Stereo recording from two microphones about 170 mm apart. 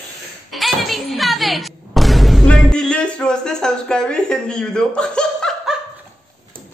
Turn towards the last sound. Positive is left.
turn(degrees=0)  # may be behind; listen again after turning